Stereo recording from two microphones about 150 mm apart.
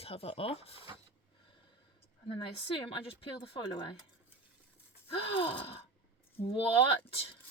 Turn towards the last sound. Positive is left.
turn(degrees=40)  # may be behind; listen again after turning